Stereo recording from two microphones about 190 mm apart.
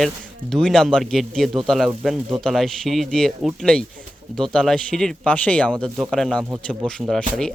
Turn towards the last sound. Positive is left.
turn(degrees=5)  # may be behind; listen again after turning